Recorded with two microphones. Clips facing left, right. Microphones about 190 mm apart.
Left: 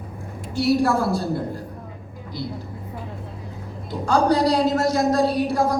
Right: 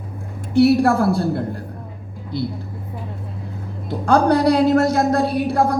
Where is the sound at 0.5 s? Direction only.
60° right (ahead or behind).